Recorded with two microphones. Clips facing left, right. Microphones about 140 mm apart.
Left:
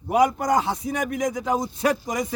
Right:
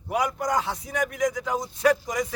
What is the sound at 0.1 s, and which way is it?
A man's voice, 25° left (ahead or behind).